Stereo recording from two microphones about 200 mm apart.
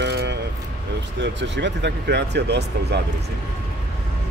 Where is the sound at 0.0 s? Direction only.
55° right (ahead or behind).